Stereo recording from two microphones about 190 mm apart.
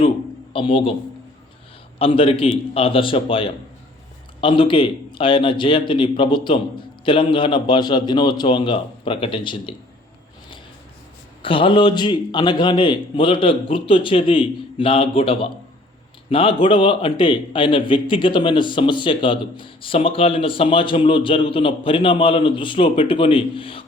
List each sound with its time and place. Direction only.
0.5 s a man's voice: 25° left (ahead or behind)
2.0 s a man's voice: 30° left (ahead or behind)
11.4 s a man's voice: 25° left (ahead or behind)